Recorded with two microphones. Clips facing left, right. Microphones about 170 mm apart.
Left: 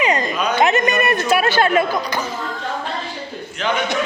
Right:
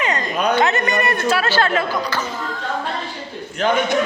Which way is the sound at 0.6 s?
15° left (ahead or behind).